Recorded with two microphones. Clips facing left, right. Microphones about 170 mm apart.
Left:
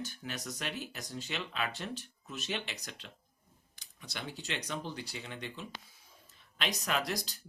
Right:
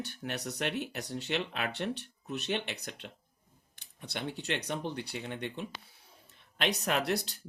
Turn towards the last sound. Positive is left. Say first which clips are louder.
# right 4 dB
turn(degrees=-65)  # may be behind; listen again after turning